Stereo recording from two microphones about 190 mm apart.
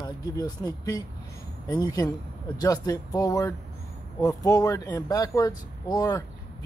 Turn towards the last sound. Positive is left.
turn(degrees=20)  # may be behind; listen again after turning